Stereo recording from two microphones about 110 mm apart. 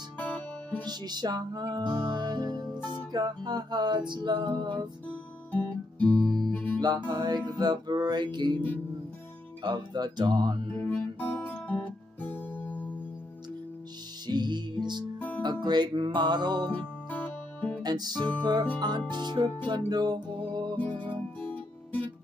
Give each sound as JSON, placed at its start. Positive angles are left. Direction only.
{"t": 0.2, "sound": "music", "side_deg": 15}
{"t": 0.8, "sound": "music", "side_deg": -40}
{"t": 5.5, "sound": "guitar", "side_deg": 15}
{"t": 6.8, "sound": "music", "side_deg": -45}
{"t": 10.9, "sound": "music", "side_deg": 15}
{"t": 14.2, "sound": "music", "side_deg": -40}
{"t": 15.1, "sound": "music", "side_deg": 15}
{"t": 15.4, "sound": "music", "side_deg": -40}
{"t": 16.7, "sound": "music", "side_deg": 15}
{"t": 17.8, "sound": "music", "side_deg": -40}
{"t": 21.4, "sound": "music", "side_deg": 15}